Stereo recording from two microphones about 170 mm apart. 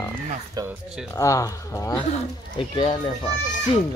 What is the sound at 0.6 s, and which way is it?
Speech, 25° right (ahead or behind).